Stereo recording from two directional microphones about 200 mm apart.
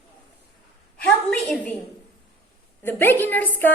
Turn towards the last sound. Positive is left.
turn(degrees=10)  # may be behind; listen again after turning